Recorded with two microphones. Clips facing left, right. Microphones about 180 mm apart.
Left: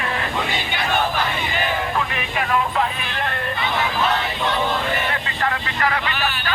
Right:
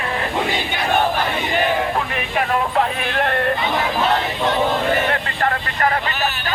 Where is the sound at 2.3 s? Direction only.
50° right (ahead or behind).